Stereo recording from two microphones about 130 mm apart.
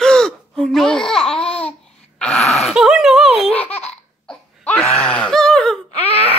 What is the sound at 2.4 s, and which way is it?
Speech, 55° left (ahead or behind).